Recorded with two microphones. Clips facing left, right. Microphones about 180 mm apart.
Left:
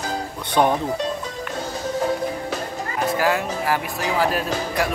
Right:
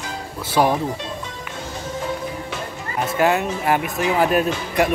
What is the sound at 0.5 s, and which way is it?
Speech, 5° right (ahead or behind).